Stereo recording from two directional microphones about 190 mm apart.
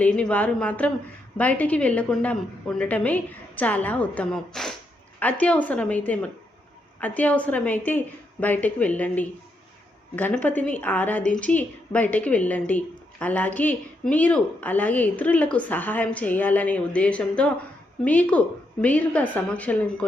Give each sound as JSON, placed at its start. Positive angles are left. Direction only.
{"t": 0.0, "sound": "a woman's voice", "side_deg": 5}